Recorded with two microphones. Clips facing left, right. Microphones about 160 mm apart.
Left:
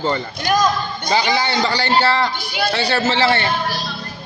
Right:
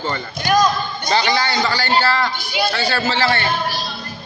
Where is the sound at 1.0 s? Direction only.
10° left (ahead or behind).